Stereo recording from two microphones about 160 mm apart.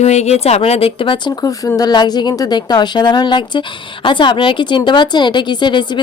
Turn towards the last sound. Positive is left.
turn(degrees=30)  # may be behind; listen again after turning